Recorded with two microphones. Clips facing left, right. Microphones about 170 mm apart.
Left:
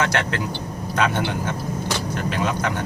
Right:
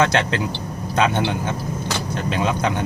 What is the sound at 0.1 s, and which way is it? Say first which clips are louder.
A man's voice: right 3 dB; 20° right (ahead or behind).